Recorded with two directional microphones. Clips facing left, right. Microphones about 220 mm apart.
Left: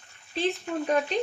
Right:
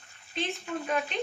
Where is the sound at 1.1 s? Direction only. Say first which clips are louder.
Left 5 dB; 35° left (ahead or behind).